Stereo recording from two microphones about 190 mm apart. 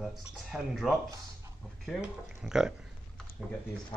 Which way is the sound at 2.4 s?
5° right (ahead or behind).